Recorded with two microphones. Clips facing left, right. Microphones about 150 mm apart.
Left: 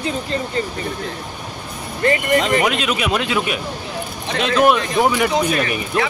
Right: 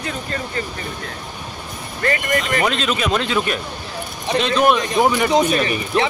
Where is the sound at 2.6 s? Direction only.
10° left (ahead or behind).